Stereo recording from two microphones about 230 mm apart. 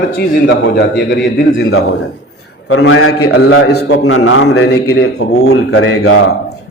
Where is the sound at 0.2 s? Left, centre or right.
Left.